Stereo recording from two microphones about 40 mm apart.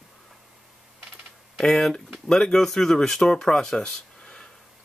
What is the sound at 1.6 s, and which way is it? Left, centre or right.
Speech, centre.